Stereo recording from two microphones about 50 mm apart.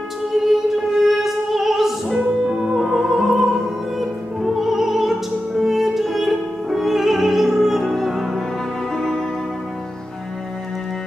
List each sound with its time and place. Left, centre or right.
0.9 s music: centre
8.9 s music: centre